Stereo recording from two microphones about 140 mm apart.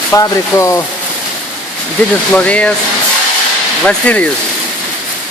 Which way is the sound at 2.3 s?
10° left (ahead or behind).